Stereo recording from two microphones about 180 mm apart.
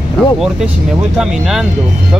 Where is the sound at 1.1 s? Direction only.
5° right (ahead or behind).